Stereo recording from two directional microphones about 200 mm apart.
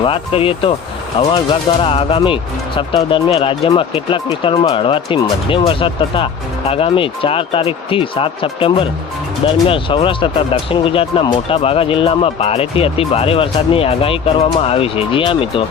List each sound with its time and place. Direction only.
0.0 s speech: 25° left (ahead or behind)